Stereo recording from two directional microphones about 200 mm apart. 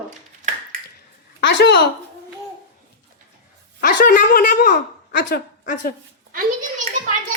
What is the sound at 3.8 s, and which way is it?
A woman's voice, 50° left (ahead or behind).